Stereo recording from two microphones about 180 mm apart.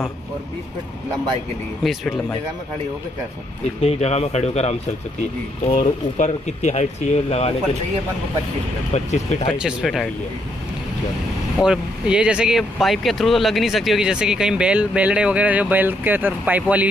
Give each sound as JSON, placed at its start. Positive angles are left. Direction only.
{"t": 1.8, "sound": "speech", "side_deg": 0}
{"t": 3.8, "sound": "speech", "side_deg": 35}
{"t": 8.9, "sound": "speech", "side_deg": 40}
{"t": 9.5, "sound": "speech", "side_deg": -5}
{"t": 11.6, "sound": "speech", "side_deg": -5}